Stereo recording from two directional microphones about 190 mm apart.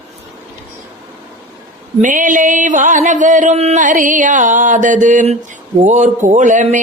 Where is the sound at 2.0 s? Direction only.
45° right (ahead or behind).